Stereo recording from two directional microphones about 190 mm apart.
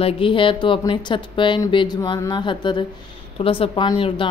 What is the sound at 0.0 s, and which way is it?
Speech, 25° left (ahead or behind).